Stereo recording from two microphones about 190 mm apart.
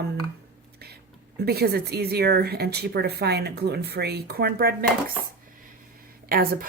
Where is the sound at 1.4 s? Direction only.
55° right (ahead or behind).